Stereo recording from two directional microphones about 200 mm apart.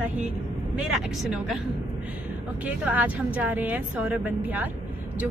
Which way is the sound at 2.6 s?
5° right (ahead or behind).